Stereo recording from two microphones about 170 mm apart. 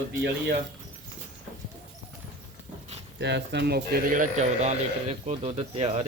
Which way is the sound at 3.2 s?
90° right.